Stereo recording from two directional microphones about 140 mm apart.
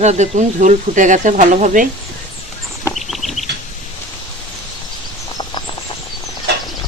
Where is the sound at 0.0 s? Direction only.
55° right (ahead or behind).